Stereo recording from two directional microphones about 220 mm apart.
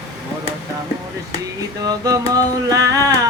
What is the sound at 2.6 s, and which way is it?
Music, 15° right (ahead or behind).